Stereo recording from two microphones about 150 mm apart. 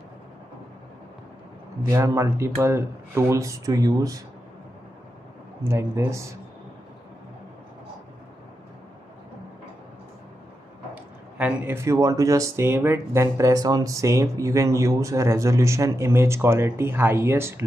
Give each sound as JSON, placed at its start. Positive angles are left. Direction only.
{"t": 1.9, "sound": "speech", "side_deg": -20}
{"t": 5.6, "sound": "speech", "side_deg": -20}
{"t": 11.3, "sound": "speech", "side_deg": -10}